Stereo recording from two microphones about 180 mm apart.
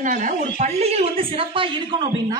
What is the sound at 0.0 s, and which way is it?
Speech, 45° right (ahead or behind).